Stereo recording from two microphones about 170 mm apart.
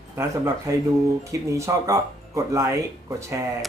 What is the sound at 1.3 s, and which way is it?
Speech, 20° right (ahead or behind).